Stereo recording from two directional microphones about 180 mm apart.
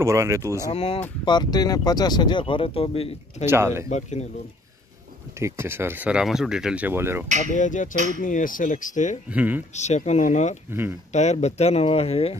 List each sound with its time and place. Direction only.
0.0 s speech: 15° right (ahead or behind)
0.7 s speech: 35° left (ahead or behind)
3.4 s speech: 15° right (ahead or behind)
3.9 s speech: 40° left (ahead or behind)
5.4 s speech: 15° right (ahead or behind)
7.5 s speech: 45° left (ahead or behind)
7.9 s speech: 45° right (ahead or behind)
8.2 s speech: 50° left (ahead or behind)
9.3 s speech: 10° right (ahead or behind)
9.8 s speech: 40° left (ahead or behind)
10.7 s speech: 10° right (ahead or behind)
11.1 s speech: 40° left (ahead or behind)